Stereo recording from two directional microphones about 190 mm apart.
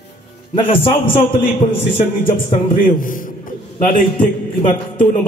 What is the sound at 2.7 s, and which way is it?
Speech, 45° left (ahead or behind).